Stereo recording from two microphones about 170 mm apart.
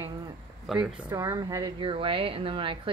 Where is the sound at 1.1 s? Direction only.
20° right (ahead or behind).